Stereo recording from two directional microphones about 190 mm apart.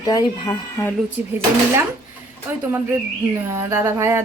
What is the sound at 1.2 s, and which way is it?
Speech, 10° right (ahead or behind).